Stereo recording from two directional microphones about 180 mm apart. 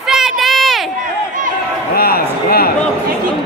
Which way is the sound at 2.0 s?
60° left (ahead or behind).